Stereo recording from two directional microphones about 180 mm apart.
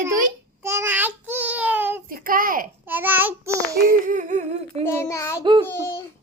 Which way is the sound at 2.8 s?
10° right (ahead or behind).